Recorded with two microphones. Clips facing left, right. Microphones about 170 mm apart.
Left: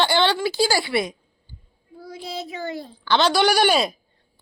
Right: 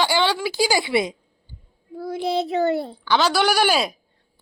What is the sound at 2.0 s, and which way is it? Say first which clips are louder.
Child singing: right 9 dB; 65° right (ahead or behind).